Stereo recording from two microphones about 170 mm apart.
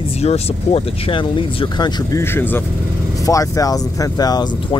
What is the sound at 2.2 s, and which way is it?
Speech, 15° left (ahead or behind).